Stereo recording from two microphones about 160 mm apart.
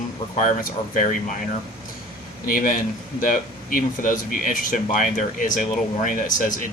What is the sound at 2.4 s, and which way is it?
Speech, 60° left (ahead or behind).